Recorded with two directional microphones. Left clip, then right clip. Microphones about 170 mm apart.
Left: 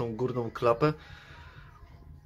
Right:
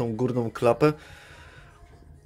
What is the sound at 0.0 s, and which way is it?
Speech, 20° right (ahead or behind).